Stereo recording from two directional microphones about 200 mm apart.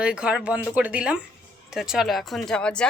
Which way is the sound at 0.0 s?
5° right (ahead or behind).